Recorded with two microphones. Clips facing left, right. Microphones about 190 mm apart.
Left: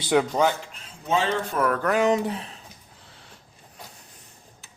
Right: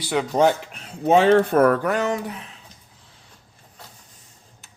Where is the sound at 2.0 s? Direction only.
20° left (ahead or behind).